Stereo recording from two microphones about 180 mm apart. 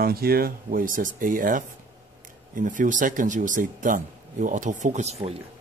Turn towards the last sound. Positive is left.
turn(degrees=-35)  # may be behind; listen again after turning